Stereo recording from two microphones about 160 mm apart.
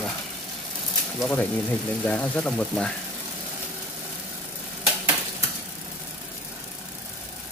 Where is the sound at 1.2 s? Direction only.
10° left (ahead or behind).